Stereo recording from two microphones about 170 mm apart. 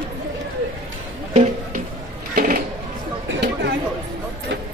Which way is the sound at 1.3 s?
40° right (ahead or behind).